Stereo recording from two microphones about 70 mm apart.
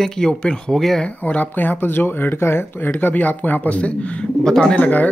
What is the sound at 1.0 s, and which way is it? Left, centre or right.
Speech, left.